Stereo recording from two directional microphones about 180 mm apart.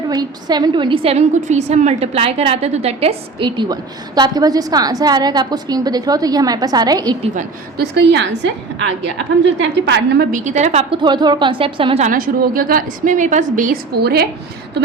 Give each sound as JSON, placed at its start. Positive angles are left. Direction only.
{"t": 0.1, "sound": "a woman's voice", "side_deg": -20}
{"t": 7.8, "sound": "a woman's voice", "side_deg": -70}
{"t": 9.4, "sound": "a woman's voice", "side_deg": -80}
{"t": 10.3, "sound": "a woman's voice", "side_deg": -45}
{"t": 11.0, "sound": "a woman's voice", "side_deg": -25}
{"t": 12.0, "sound": "a woman's voice", "side_deg": -50}